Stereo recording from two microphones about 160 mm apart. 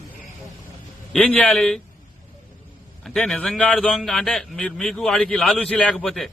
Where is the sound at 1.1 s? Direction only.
5° left (ahead or behind).